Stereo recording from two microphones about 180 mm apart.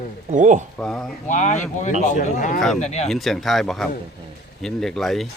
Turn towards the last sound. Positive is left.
turn(degrees=0)  # may be behind; listen again after turning